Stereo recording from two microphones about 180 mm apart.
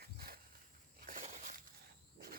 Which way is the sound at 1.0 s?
40° right (ahead or behind).